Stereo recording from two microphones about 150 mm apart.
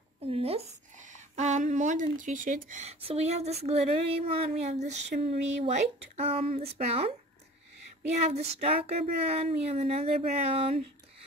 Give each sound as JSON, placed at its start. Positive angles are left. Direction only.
{"t": 0.2, "sound": "a sound", "side_deg": -40}
{"t": 1.1, "sound": "speech", "side_deg": -50}
{"t": 8.5, "sound": "speech", "side_deg": -45}